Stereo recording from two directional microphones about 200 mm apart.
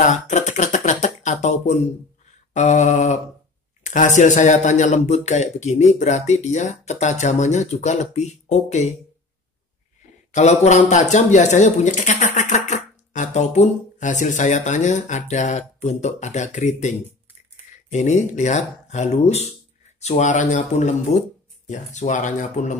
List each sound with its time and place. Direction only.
0.0 s a sound: 35° left (ahead or behind)
2.5 s speech: 35° left (ahead or behind)
10.3 s speech: 35° left (ahead or behind)